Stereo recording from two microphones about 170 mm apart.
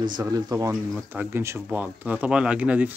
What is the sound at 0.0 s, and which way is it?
Speech, 25° right (ahead or behind).